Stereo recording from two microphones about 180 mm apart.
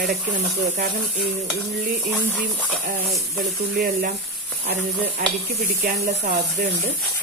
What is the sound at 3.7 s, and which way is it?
Speech, 50° right (ahead or behind).